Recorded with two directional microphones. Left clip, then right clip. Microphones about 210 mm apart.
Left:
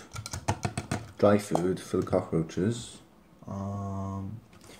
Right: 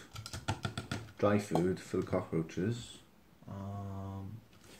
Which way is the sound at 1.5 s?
30° left (ahead or behind).